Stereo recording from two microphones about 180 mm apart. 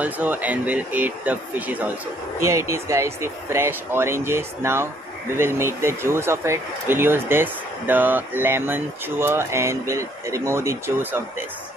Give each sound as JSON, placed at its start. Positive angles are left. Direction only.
{"t": 0.0, "sound": "speech", "side_deg": -10}